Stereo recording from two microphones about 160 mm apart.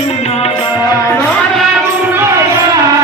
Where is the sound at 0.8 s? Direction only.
20° left (ahead or behind).